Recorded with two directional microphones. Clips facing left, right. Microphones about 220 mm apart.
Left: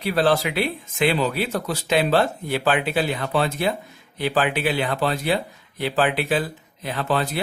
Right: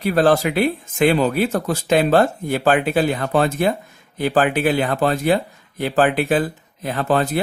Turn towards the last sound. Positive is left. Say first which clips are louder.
# right 5 dB
turn(degrees=-50)  # may be behind; listen again after turning